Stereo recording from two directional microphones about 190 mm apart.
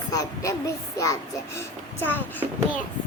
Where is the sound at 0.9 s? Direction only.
15° left (ahead or behind).